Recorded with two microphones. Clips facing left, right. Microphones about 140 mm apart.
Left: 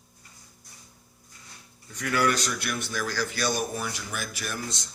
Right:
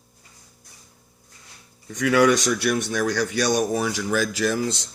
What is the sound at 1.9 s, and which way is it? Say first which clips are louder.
Speech: right 8 dB; 90° right.